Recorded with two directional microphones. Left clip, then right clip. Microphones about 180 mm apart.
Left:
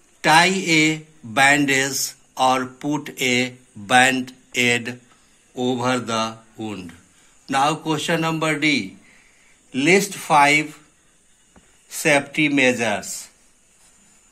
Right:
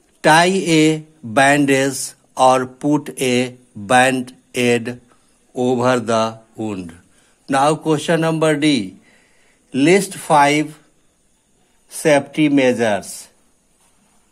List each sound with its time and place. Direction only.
0.2 s speech: 45° right (ahead or behind)
5.5 s a man's voice: 55° right (ahead or behind)
12.0 s speech: 35° right (ahead or behind)